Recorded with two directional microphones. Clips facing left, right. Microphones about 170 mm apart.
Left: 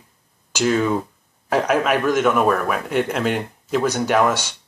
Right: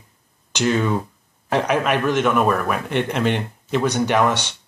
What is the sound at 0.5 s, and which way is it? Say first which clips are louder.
A man's voice: left 1 dB; 5° left (ahead or behind).